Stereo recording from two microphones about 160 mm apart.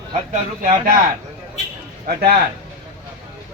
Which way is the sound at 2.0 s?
70° right (ahead or behind).